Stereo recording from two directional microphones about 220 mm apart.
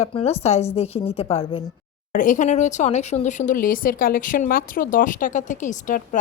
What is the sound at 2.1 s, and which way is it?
Speech, 35° left (ahead or behind).